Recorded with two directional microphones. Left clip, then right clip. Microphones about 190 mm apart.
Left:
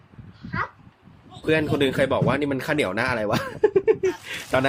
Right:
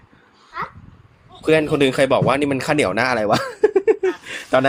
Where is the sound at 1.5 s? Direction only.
10° right (ahead or behind).